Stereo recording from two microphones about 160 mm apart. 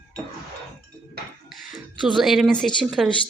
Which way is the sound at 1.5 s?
Centre (ahead or behind).